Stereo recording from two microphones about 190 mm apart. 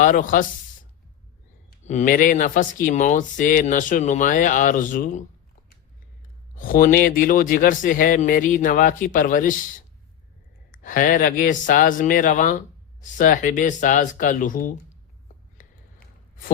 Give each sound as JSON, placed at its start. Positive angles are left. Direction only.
{"t": 0.0, "sound": "speech", "side_deg": 45}
{"t": 1.8, "sound": "speech", "side_deg": 40}
{"t": 6.6, "sound": "speech", "side_deg": 45}
{"t": 10.7, "sound": "speech", "side_deg": 45}
{"t": 15.5, "sound": "a sound", "side_deg": 50}